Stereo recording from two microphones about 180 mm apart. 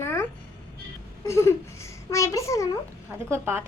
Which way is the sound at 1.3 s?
15° left (ahead or behind).